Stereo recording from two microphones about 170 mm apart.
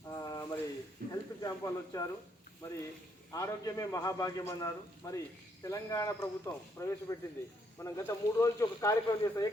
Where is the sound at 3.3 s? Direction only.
20° left (ahead or behind).